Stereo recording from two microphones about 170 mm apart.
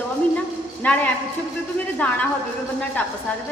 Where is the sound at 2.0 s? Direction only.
10° left (ahead or behind).